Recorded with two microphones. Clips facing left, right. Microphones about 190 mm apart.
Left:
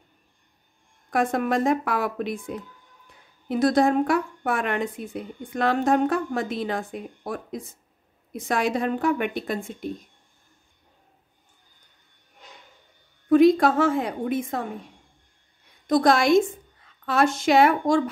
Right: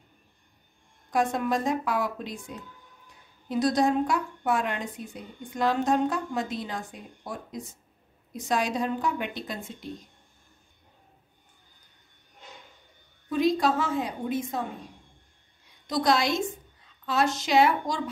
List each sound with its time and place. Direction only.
1.1 s a woman's voice: 60° left (ahead or behind)
13.3 s a woman's voice: 55° left (ahead or behind)
15.9 s a woman's voice: 50° left (ahead or behind)